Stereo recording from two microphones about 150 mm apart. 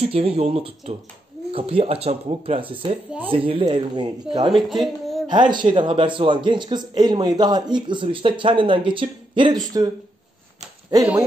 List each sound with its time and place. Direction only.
0.0 s a man's voice: 40° right (ahead or behind)
4.5 s a woman's voice: centre (ahead or behind)
5.3 s a man's voice: 30° right (ahead or behind)